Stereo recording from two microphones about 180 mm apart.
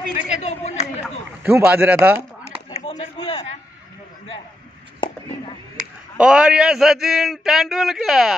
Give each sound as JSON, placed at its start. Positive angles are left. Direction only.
{"t": 0.1, "sound": "chatter", "side_deg": 40}
{"t": 1.4, "sound": "speech", "side_deg": -10}
{"t": 2.9, "sound": "a sound", "side_deg": 30}
{"t": 6.1, "sound": "a man's voice", "side_deg": -5}